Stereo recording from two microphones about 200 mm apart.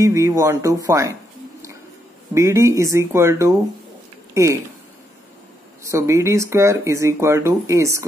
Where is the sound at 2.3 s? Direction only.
15° right (ahead or behind).